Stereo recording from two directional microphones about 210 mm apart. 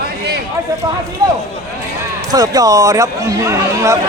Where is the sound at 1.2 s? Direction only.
20° right (ahead or behind).